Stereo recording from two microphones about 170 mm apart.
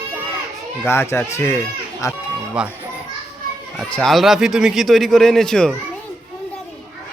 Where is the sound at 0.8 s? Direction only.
15° left (ahead or behind).